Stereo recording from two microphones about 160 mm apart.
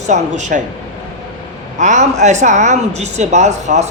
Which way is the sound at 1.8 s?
50° right (ahead or behind).